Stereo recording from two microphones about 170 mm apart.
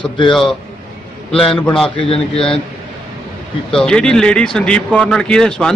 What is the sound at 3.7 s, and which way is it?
Speech, 5° left (ahead or behind).